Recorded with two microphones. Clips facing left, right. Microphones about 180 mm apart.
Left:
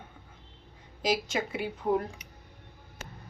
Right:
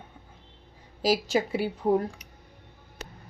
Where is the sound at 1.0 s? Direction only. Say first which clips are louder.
Right 5 dB; 35° right (ahead or behind).